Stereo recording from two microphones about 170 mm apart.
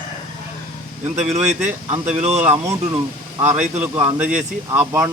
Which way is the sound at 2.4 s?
15° right (ahead or behind).